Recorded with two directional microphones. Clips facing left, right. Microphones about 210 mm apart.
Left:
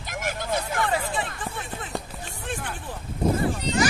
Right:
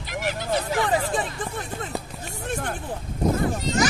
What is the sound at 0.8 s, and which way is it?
Music, 40° right (ahead or behind).